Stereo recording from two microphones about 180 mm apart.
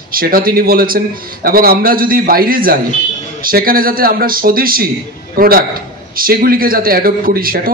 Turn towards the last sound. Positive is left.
turn(degrees=-55)  # may be behind; listen again after turning